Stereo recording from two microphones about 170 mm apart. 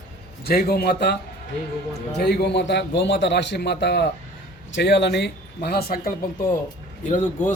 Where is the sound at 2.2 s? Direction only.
75° left (ahead or behind).